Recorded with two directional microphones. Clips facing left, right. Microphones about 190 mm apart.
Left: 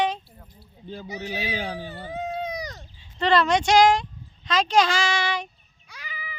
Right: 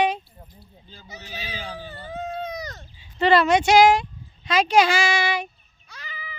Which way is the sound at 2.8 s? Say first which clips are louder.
Right 4 dB; 5° right (ahead or behind).